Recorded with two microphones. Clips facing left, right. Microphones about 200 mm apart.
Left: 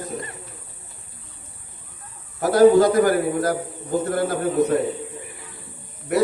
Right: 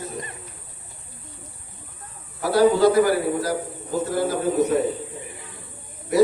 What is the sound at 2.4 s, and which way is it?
A man's voice, 45° left (ahead or behind).